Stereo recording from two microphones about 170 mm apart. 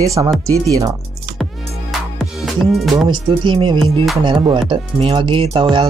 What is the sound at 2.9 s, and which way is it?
Speech, 30° right (ahead or behind).